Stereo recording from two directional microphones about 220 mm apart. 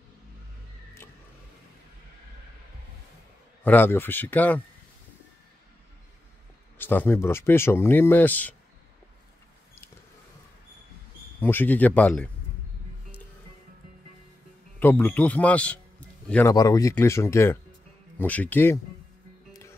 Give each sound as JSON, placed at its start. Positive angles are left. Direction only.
{"t": 3.6, "sound": "speech", "side_deg": 10}
{"t": 6.8, "sound": "speech", "side_deg": 10}
{"t": 11.4, "sound": "speech", "side_deg": 10}
{"t": 14.8, "sound": "speech", "side_deg": 10}